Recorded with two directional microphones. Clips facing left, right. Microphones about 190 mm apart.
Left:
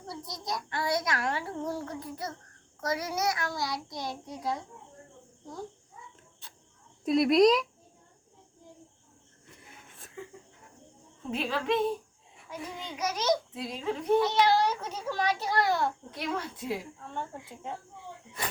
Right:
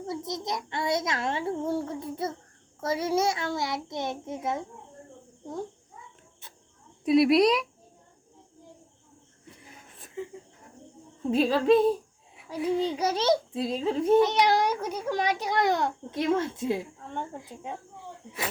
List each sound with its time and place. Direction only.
0.1 s a child's voice: 20° right (ahead or behind)
7.0 s a woman's voice: 5° right (ahead or behind)
11.3 s a child's voice: 35° right (ahead or behind); by 17.7 s 15° right (ahead or behind)